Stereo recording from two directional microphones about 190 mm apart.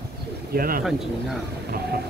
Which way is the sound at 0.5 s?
50° right (ahead or behind).